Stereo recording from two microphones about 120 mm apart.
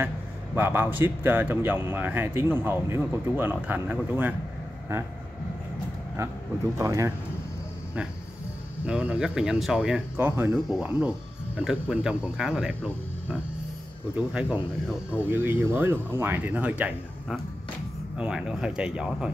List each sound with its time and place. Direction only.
0.6 s speech: 15° right (ahead or behind)
6.8 s speech: 25° right (ahead or behind)
8.8 s speech: 10° right (ahead or behind)
10.5 s speech: 5° right (ahead or behind)
14.1 s speech: 10° right (ahead or behind)